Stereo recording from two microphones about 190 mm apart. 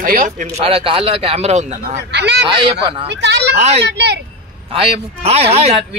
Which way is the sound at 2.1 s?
65° right (ahead or behind).